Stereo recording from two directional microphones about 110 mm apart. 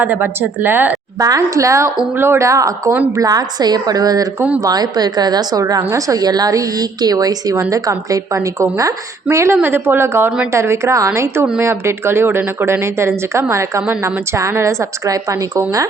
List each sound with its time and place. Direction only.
0.0 s a woman's voice: 20° right (ahead or behind)
1.2 s a woman's voice: 30° right (ahead or behind)